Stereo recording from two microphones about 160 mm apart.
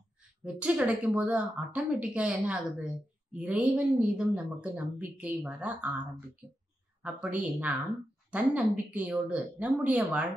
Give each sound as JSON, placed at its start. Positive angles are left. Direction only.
{"t": 0.4, "sound": "a woman's voice", "side_deg": -5}